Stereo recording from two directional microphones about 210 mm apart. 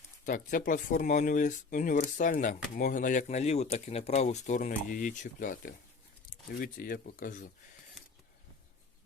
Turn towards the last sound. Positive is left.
turn(degrees=40)  # may be behind; listen again after turning